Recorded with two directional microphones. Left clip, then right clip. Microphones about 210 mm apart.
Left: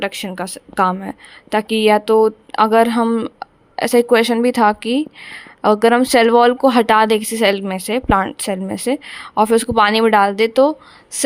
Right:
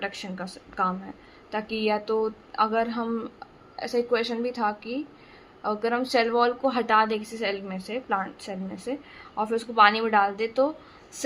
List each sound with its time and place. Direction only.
0.0 s a woman's voice: 45° left (ahead or behind)